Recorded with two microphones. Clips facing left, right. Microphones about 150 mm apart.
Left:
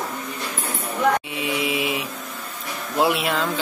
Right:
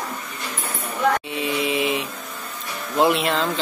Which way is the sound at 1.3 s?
10° left (ahead or behind).